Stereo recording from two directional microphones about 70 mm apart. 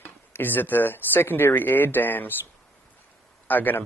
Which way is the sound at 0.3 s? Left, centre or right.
Left.